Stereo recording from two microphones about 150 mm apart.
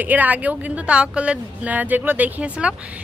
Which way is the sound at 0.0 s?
10° right (ahead or behind).